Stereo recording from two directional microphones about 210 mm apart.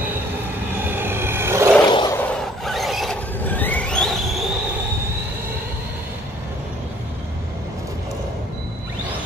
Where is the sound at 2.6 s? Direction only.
Centre (ahead or behind).